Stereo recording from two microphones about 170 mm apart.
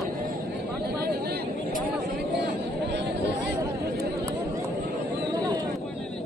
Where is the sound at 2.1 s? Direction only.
85° right.